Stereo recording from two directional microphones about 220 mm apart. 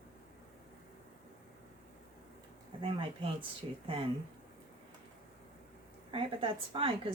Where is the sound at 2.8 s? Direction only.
20° right (ahead or behind).